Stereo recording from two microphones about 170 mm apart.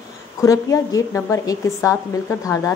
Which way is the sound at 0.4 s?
20° left (ahead or behind).